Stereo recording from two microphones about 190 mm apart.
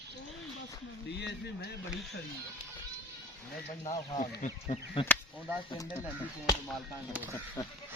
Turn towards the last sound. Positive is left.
turn(degrees=15)  # may be behind; listen again after turning